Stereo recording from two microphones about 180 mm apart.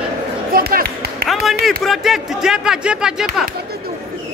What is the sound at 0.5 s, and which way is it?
Speech, 55° right (ahead or behind).